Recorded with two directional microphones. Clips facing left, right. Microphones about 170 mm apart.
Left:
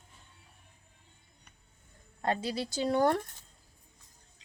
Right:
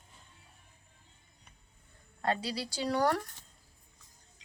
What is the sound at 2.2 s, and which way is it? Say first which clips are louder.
Speech: left 1 dB; 20° left (ahead or behind).